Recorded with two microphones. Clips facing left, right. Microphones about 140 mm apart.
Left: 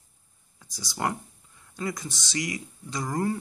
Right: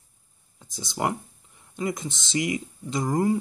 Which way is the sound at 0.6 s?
20° right (ahead or behind).